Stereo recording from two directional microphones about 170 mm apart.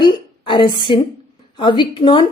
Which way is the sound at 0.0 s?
30° left (ahead or behind).